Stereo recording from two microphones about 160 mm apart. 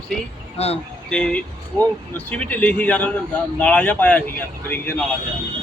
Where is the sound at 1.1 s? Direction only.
5° left (ahead or behind).